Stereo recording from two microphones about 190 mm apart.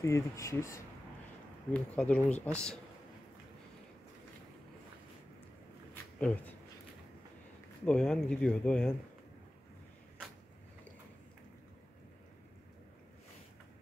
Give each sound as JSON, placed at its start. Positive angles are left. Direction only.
{"t": 0.0, "sound": "speech", "side_deg": 15}
{"t": 6.1, "sound": "speech", "side_deg": 5}
{"t": 7.8, "sound": "speech", "side_deg": 5}